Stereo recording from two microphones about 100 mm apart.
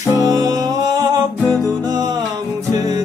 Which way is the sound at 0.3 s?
40° right (ahead or behind).